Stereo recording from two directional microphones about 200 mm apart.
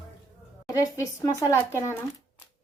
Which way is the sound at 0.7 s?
15° left (ahead or behind).